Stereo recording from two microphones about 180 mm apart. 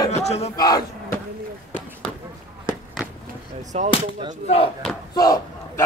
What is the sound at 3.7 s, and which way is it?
Speech, 35° right (ahead or behind).